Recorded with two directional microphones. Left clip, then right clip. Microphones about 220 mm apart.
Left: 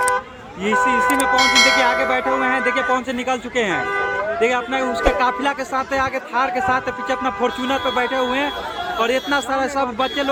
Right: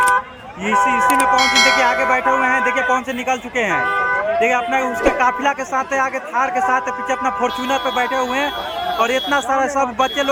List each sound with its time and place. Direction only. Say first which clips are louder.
0.6 s a man's voice: right 2 dB; centre (ahead or behind)